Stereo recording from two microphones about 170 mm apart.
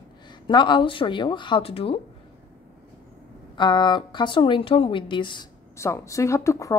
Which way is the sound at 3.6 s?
25° left (ahead or behind).